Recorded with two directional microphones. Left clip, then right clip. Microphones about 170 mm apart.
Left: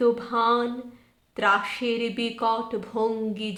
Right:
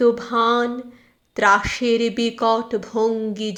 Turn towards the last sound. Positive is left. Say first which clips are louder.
# right 5 dB
turn(degrees=-25)  # may be behind; listen again after turning